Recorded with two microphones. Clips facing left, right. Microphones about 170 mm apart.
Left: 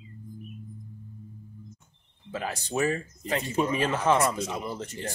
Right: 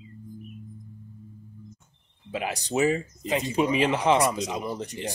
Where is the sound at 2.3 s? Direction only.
15° right (ahead or behind).